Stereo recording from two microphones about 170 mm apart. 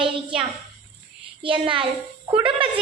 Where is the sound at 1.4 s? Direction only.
30° right (ahead or behind).